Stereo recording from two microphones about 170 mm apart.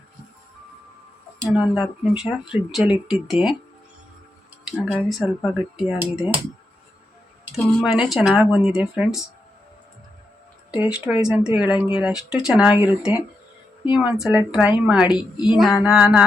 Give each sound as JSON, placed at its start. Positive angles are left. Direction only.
{"t": 1.5, "sound": "speech", "side_deg": 0}
{"t": 5.0, "sound": "speech", "side_deg": 0}
{"t": 7.5, "sound": "speech", "side_deg": 0}
{"t": 10.8, "sound": "speech", "side_deg": -5}
{"t": 15.0, "sound": "a woman's voice", "side_deg": 25}
{"t": 15.4, "sound": "speech", "side_deg": 0}